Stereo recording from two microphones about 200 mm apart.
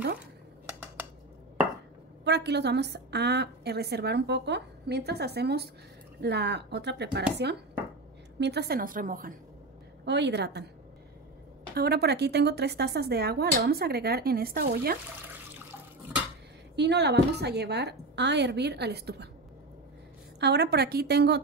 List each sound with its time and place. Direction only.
1.0 s a sound: 10° right (ahead or behind)
2.2 s a woman's voice: 55° right (ahead or behind)
8.4 s speech: 55° right (ahead or behind)
10.0 s a woman's voice: 60° right (ahead or behind)
11.7 s speech: 55° right (ahead or behind)
16.7 s a woman's voice: 60° right (ahead or behind)
20.3 s speech: 55° right (ahead or behind)